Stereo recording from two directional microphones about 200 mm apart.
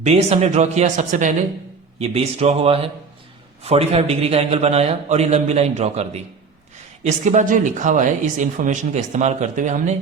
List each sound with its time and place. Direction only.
0.0 s speech: 35° right (ahead or behind)